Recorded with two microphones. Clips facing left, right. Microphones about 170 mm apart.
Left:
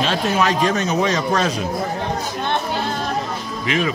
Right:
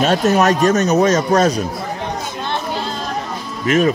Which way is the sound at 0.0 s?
45° right (ahead or behind).